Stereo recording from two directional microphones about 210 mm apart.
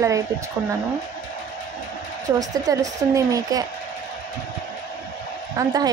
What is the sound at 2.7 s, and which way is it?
Speech, 15° right (ahead or behind).